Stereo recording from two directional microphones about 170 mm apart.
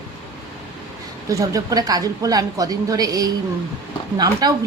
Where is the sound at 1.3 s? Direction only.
20° right (ahead or behind).